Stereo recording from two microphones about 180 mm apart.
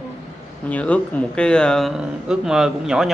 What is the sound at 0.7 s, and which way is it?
Speech, 10° left (ahead or behind).